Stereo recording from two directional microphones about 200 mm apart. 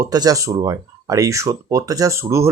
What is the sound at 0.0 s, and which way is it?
Speech, 20° right (ahead or behind).